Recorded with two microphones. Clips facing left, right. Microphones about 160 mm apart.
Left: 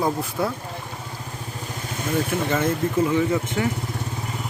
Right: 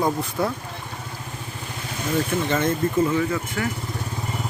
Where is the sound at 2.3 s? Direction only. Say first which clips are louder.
Even; 10° left (ahead or behind).